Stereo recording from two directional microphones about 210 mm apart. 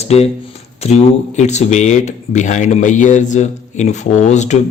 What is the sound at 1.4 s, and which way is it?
Speech, 35° left (ahead or behind).